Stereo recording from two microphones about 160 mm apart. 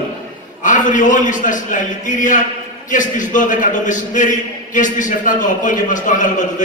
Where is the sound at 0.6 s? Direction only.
55° left (ahead or behind).